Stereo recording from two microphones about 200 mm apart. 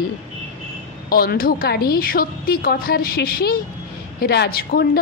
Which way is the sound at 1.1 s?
50° left (ahead or behind).